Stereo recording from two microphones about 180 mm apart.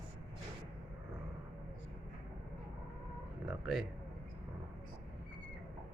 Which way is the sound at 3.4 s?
Centre (ahead or behind).